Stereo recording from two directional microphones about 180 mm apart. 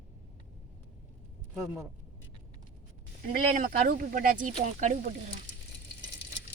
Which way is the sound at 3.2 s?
50° right (ahead or behind).